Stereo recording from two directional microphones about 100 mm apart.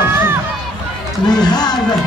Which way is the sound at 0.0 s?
25° right (ahead or behind).